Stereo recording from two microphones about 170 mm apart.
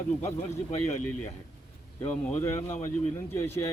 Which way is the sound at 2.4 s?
15° left (ahead or behind).